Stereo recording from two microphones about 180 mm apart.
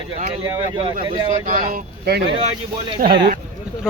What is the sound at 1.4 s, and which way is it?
Speech, 50° right (ahead or behind).